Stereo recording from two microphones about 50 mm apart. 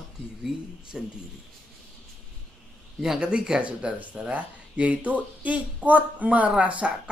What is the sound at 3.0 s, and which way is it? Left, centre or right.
Speech, centre.